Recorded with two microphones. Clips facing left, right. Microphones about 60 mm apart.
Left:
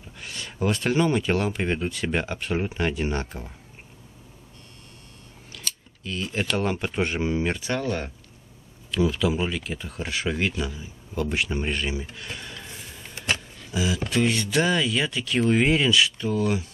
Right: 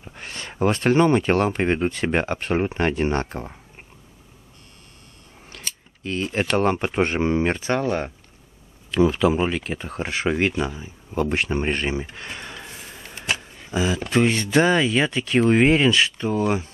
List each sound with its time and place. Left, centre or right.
0.1 s speech: right
5.5 s scissors: right
6.0 s speech: right
7.8 s speech: right
8.9 s speech: right